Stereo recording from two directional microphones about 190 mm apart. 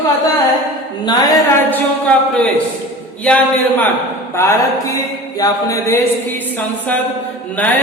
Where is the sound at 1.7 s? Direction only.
5° left (ahead or behind).